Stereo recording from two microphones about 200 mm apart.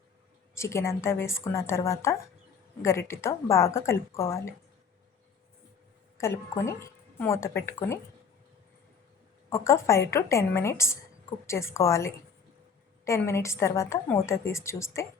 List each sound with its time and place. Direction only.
0.5 s a woman's voice: 15° left (ahead or behind)
6.1 s a woman's voice: 15° left (ahead or behind)
9.5 s a woman's voice: 15° left (ahead or behind)